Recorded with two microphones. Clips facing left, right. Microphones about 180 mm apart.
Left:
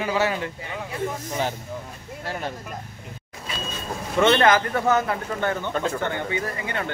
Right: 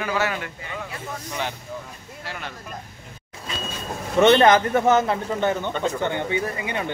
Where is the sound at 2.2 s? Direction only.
40° left (ahead or behind).